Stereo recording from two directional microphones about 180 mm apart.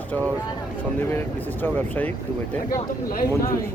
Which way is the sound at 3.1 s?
50° left (ahead or behind).